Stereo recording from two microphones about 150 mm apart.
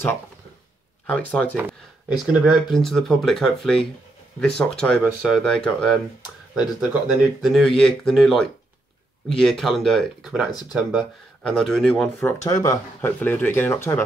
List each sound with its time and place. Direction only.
1.0 s speech: 10° left (ahead or behind)
5.0 s speech: 5° right (ahead or behind)
5.4 s speech: 5° left (ahead or behind)
6.5 s speech: 5° right (ahead or behind)
12.2 s speech: 20° left (ahead or behind)